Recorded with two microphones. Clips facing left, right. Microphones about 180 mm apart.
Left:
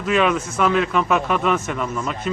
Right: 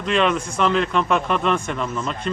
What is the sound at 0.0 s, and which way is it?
Speech, 5° left (ahead or behind).